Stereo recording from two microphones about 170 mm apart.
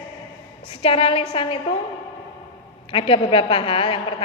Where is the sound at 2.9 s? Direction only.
30° left (ahead or behind).